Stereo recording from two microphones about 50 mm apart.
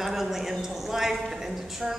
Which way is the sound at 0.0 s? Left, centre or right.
Centre.